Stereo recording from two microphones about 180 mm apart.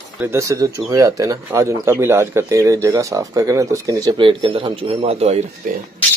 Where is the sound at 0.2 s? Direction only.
15° right (ahead or behind); by 5.4 s 35° right (ahead or behind).